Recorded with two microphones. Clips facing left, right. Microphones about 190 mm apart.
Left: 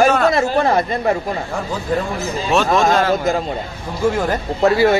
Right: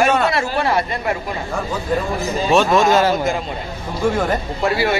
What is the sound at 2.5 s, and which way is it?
Speech, centre (ahead or behind).